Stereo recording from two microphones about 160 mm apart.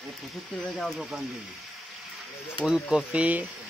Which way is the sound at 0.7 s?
Centre (ahead or behind).